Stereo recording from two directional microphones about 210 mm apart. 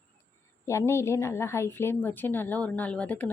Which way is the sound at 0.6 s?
15° left (ahead or behind).